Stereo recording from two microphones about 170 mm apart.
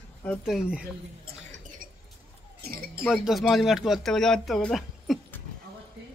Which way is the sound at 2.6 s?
65° right (ahead or behind).